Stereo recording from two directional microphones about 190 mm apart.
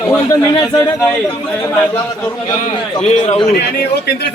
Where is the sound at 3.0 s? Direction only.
35° left (ahead or behind).